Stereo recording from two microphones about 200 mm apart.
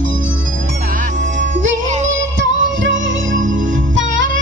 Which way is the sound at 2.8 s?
70° right (ahead or behind).